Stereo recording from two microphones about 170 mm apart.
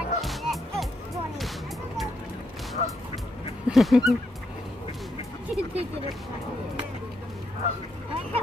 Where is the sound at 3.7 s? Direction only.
Centre (ahead or behind).